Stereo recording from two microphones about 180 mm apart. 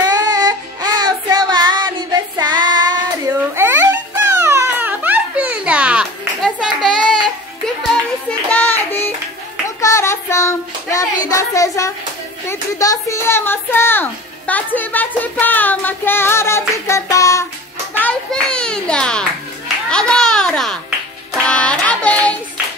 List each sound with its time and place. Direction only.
0.0 s child singing: 20° right (ahead or behind); by 7.0 s centre (ahead or behind)
7.6 s music: 5° left (ahead or behind)
9.8 s child singing: 15° left (ahead or behind)
11.2 s a sound: 20° left (ahead or behind)
17.9 s a sound: 5° left (ahead or behind)
21.4 s child singing: 5° left (ahead or behind)